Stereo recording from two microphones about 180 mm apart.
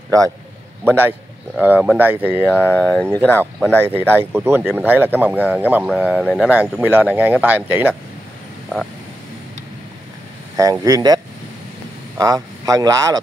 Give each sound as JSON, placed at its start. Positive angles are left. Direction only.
{"t": 0.8, "sound": "speech", "side_deg": -10}
{"t": 2.4, "sound": "speech", "side_deg": 10}
{"t": 3.9, "sound": "speech", "side_deg": -10}
{"t": 10.5, "sound": "speech", "side_deg": -20}
{"t": 12.2, "sound": "speech", "side_deg": -20}